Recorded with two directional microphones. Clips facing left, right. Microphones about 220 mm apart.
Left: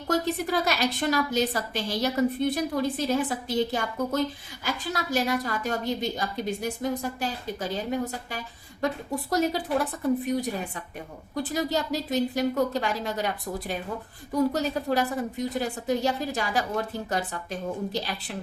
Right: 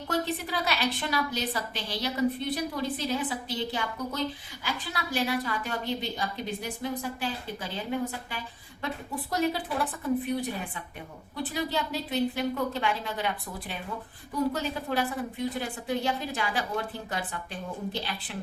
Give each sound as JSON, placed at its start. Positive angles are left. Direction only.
{"t": 0.1, "sound": "a woman's voice", "side_deg": 45}